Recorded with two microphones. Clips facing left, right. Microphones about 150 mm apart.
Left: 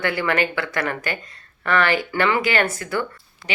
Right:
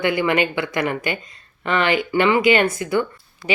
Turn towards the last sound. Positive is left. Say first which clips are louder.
# right 3 dB
turn(degrees=-15)  # may be behind; listen again after turning